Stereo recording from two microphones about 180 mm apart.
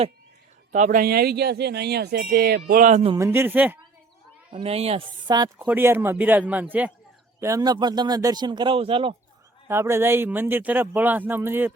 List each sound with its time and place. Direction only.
0.7 s speech: 45° right (ahead or behind)
2.6 s speech: 50° right (ahead or behind)
3.2 s speech: 15° right (ahead or behind)
4.5 s speech: 35° right (ahead or behind)
5.5 s speech: 10° right (ahead or behind); by 9.1 s 30° right (ahead or behind)
9.6 s speech: 15° right (ahead or behind)